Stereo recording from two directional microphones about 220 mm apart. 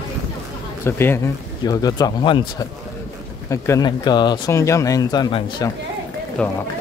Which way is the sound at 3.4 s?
15° left (ahead or behind).